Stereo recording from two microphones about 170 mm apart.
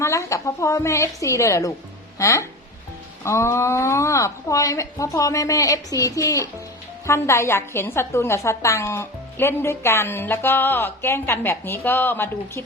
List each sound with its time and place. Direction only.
0.0 s a woman's voice: 15° left (ahead or behind)